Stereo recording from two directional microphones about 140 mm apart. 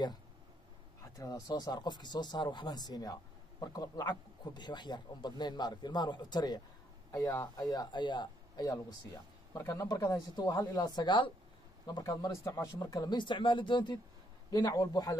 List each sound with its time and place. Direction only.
1.1 s speech: 25° left (ahead or behind)
9.5 s speech: 20° left (ahead or behind)